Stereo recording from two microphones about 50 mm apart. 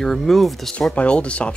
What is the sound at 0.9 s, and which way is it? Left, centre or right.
Speech, left.